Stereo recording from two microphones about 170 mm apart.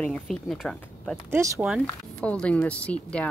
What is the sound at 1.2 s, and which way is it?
Speech, 15° right (ahead or behind).